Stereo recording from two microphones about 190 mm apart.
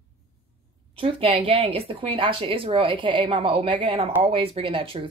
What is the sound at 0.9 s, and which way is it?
A woman's voice, 30° right (ahead or behind).